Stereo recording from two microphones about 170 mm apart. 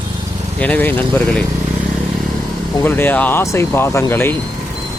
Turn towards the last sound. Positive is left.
turn(degrees=15)  # may be behind; listen again after turning